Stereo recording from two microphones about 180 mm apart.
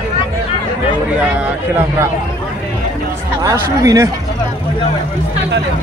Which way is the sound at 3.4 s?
20° right (ahead or behind).